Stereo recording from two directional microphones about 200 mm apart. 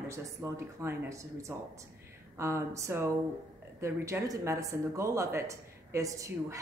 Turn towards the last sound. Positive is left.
turn(degrees=-15)  # may be behind; listen again after turning